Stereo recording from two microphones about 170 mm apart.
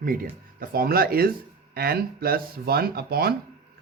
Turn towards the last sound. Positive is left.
turn(degrees=-65)  # may be behind; listen again after turning